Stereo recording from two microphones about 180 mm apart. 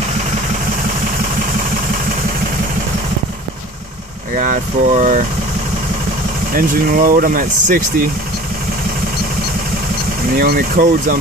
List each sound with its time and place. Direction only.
4.4 s speech: 45° right (ahead or behind)
6.5 s speech: 50° right (ahead or behind)
10.3 s speech: 55° right (ahead or behind)